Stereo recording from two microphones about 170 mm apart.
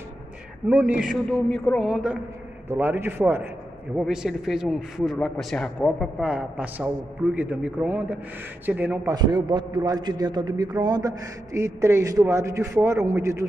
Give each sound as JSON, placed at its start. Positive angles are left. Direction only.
{"t": 0.7, "sound": "a man's voice", "side_deg": -5}
{"t": 1.3, "sound": "a man's voice", "side_deg": 5}
{"t": 2.7, "sound": "a man's voice", "side_deg": -15}
{"t": 9.1, "sound": "a man's voice", "side_deg": -25}